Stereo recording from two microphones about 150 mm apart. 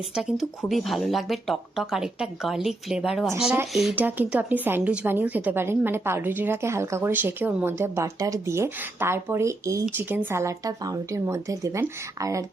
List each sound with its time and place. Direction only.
0.2 s a woman's voice: centre (ahead or behind); by 12.4 s 20° right (ahead or behind)